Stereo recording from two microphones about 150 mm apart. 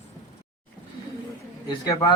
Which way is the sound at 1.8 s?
20° left (ahead or behind).